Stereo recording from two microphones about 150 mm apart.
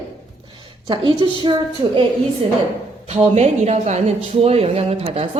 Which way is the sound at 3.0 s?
45° right (ahead or behind).